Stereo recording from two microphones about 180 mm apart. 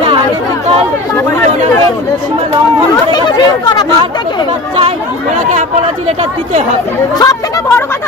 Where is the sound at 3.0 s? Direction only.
25° left (ahead or behind).